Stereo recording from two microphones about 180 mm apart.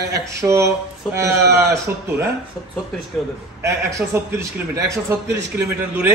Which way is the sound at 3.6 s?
15° right (ahead or behind).